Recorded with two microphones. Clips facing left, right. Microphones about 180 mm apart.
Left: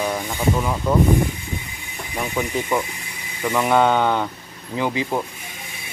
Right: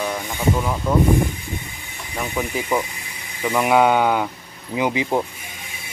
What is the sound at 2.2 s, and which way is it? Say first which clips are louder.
Speech: left 1 dB; 5° right (ahead or behind).